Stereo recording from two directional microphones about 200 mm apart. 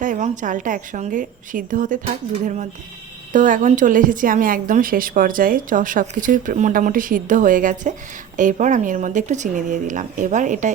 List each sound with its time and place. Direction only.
0.0 s a woman's voice: 40° right (ahead or behind)